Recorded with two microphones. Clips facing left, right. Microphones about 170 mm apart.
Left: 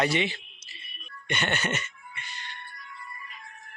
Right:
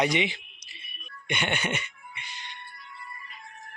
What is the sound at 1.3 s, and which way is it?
Cat, 10° right (ahead or behind).